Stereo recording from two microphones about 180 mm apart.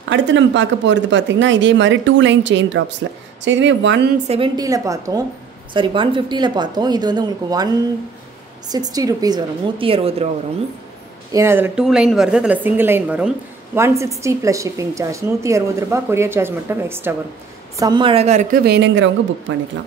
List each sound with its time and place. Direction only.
0.1 s speech: 90° right
3.0 s speech: 75° right (ahead or behind)
3.4 s speech: 90° right
4.3 s speech: 25° right (ahead or behind)
11.3 s a woman's voice: 15° right (ahead or behind)
17.7 s a woman's voice: 25° right (ahead or behind); by 18.6 s 40° right (ahead or behind)
18.6 s speech: 70° right (ahead or behind)